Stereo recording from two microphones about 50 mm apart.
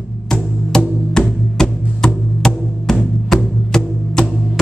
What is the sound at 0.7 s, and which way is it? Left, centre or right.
Music, centre.